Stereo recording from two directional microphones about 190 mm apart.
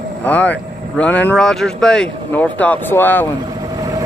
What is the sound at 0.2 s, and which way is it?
Speech, 10° left (ahead or behind).